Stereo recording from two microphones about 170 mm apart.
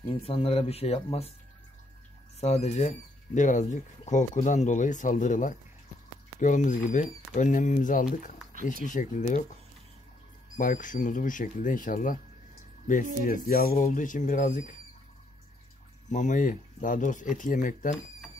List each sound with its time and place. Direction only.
0.1 s speech: 35° left (ahead or behind)
2.4 s speech: 40° left (ahead or behind)
10.6 s speech: 50° left (ahead or behind)
16.1 s speech: 45° left (ahead or behind)